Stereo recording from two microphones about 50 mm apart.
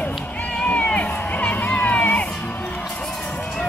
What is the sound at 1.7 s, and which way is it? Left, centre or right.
Music, left.